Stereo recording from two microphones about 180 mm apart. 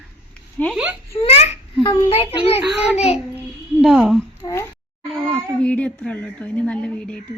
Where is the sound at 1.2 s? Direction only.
35° left (ahead or behind).